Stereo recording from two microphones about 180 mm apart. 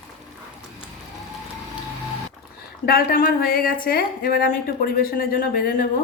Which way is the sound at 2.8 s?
55° left (ahead or behind).